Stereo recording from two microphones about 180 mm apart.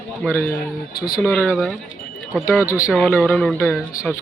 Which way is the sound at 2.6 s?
15° left (ahead or behind).